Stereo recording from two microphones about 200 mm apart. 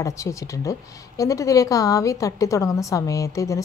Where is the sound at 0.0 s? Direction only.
15° left (ahead or behind).